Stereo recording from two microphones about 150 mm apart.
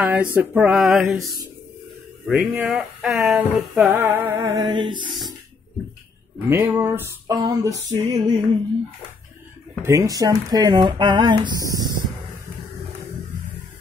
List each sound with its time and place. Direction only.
0.0 s a sound: 10° right (ahead or behind)
2.2 s a sound: 5° right (ahead or behind)
3.2 s music: 15° right (ahead or behind); by 5.0 s 30° right (ahead or behind)
6.4 s music: 15° right (ahead or behind)
7.2 s speech: 25° right (ahead or behind)
9.8 s speech: 20° right (ahead or behind)